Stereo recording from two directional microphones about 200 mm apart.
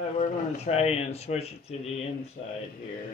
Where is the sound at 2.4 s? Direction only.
50° left (ahead or behind).